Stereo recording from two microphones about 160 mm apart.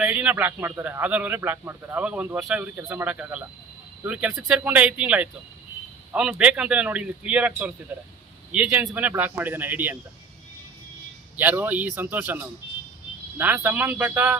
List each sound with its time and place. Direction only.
0.0 s a man's voice: 10° right (ahead or behind)
11.3 s a man's voice: 10° right (ahead or behind)